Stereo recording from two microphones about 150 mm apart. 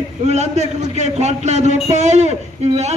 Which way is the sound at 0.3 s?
50° right (ahead or behind).